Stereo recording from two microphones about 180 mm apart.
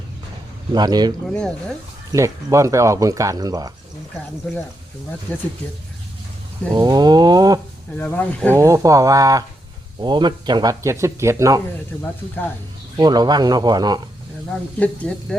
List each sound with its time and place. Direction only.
0.7 s speech: 25° right (ahead or behind)
1.3 s speech: 5° left (ahead or behind)
2.1 s speech: 15° right (ahead or behind)
5.3 s speech: 5° left (ahead or behind)
6.7 s speech: 25° right (ahead or behind)
7.9 s speech: 10° left (ahead or behind)
8.5 s speech: 15° right (ahead or behind)
13.0 s speech: 25° right (ahead or behind)
14.8 s speech: 5° left (ahead or behind)